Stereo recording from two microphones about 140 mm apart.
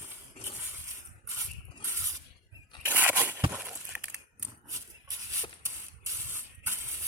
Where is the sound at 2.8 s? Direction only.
15° right (ahead or behind).